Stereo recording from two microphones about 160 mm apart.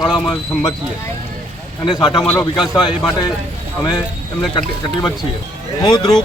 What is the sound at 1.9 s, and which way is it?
Speech, 30° left (ahead or behind).